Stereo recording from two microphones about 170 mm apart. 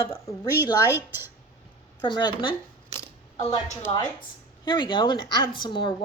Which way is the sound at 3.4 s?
20° left (ahead or behind).